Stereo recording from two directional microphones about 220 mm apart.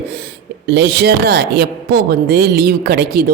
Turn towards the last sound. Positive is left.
turn(degrees=-45)  # may be behind; listen again after turning